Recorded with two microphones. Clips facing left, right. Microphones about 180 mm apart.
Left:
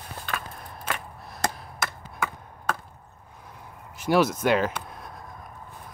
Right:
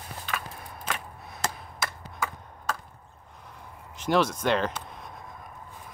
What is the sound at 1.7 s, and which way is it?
Chop, 55° left (ahead or behind).